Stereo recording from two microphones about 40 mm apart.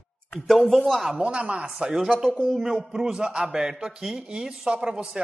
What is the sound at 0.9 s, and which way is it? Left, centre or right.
Speech, centre.